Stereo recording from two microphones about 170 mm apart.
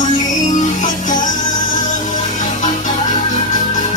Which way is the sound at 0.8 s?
50° left (ahead or behind).